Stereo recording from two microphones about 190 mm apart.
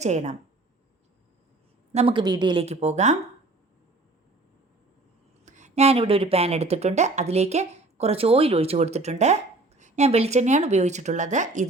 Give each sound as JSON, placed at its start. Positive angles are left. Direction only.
{"t": 0.0, "sound": "speech", "side_deg": -35}
{"t": 1.9, "sound": "speech", "side_deg": -30}
{"t": 5.5, "sound": "speech", "side_deg": -40}